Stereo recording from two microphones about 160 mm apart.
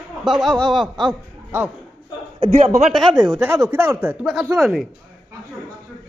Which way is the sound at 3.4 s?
15° right (ahead or behind).